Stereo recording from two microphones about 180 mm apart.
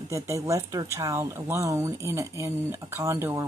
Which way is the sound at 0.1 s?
15° right (ahead or behind).